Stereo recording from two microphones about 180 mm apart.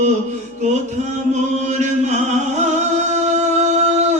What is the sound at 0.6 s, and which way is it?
Chant, 40° right (ahead or behind).